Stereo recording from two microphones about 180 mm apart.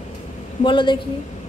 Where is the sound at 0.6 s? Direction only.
25° left (ahead or behind).